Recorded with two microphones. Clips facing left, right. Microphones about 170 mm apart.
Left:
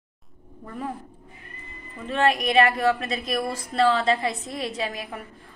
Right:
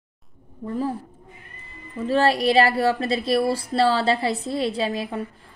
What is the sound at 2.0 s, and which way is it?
A woman's voice, 35° right (ahead or behind).